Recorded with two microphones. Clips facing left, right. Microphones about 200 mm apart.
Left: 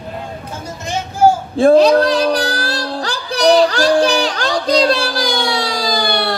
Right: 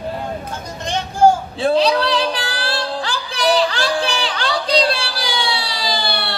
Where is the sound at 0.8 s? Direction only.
5° left (ahead or behind).